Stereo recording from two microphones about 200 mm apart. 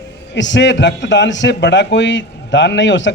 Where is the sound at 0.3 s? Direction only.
65° left (ahead or behind).